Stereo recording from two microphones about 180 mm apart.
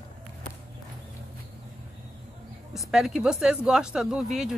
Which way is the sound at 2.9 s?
5° right (ahead or behind).